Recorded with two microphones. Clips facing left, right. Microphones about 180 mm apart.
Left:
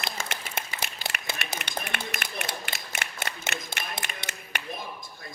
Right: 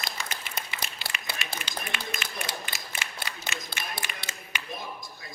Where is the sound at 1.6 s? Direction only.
60° left (ahead or behind).